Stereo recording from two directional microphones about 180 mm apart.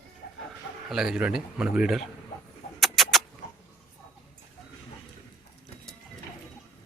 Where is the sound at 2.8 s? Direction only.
Centre (ahead or behind).